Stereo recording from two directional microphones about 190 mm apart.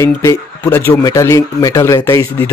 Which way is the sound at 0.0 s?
10° left (ahead or behind).